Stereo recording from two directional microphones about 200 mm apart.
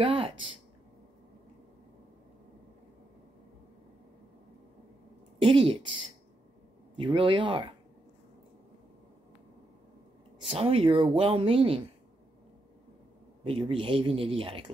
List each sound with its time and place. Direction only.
0.0 s a sound: 25° right (ahead or behind)
5.4 s speech: 25° right (ahead or behind)
10.5 s speech: 30° right (ahead or behind)
13.4 s speech: 25° right (ahead or behind)